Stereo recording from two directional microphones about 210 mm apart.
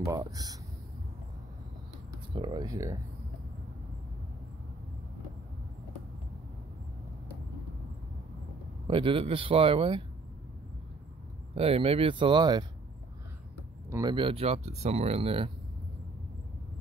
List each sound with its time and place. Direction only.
0.0 s speech: 15° right (ahead or behind)
2.3 s speech: 20° right (ahead or behind)
8.8 s speech: 25° right (ahead or behind)
11.5 s speech: 30° right (ahead or behind)
13.8 s speech: 15° right (ahead or behind)
14.1 s speech: 25° right (ahead or behind)